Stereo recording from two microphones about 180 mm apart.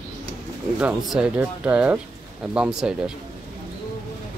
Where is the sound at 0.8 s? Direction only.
5° right (ahead or behind).